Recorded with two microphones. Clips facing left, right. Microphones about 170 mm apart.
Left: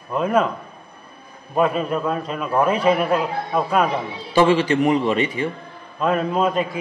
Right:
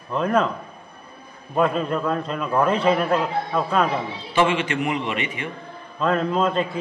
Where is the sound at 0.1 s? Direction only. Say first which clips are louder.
Left 2 dB; 5° left (ahead or behind).